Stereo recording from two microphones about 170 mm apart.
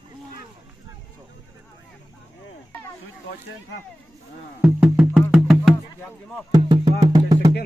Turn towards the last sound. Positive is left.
turn(degrees=-20)  # may be behind; listen again after turning